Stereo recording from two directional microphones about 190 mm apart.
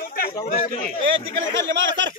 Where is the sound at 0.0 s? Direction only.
50° left (ahead or behind).